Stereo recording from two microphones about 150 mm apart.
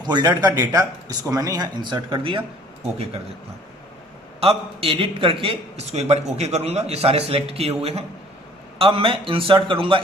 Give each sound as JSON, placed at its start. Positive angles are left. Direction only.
{"t": 0.0, "sound": "speech", "side_deg": -30}
{"t": 4.4, "sound": "a man's voice", "side_deg": -40}